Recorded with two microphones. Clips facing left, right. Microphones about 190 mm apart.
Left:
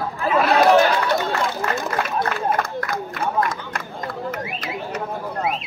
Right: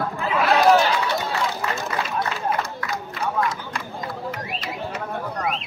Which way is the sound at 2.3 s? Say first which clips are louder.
Left 3 dB; 55° left (ahead or behind).